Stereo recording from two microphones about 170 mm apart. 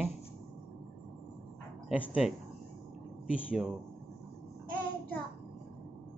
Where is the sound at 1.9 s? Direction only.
10° right (ahead or behind).